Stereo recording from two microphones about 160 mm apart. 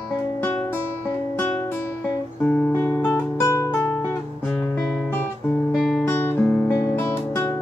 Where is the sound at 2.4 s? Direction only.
10° left (ahead or behind).